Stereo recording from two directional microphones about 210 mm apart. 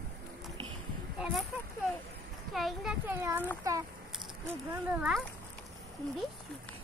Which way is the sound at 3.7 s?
15° right (ahead or behind).